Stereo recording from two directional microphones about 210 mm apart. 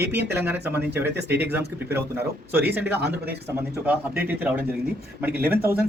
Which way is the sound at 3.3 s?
10° right (ahead or behind).